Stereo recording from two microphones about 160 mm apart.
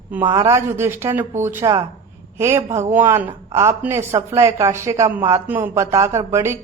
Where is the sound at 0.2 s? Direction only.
30° right (ahead or behind).